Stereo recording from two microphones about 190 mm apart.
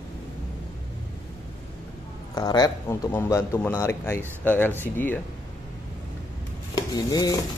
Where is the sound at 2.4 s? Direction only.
20° left (ahead or behind).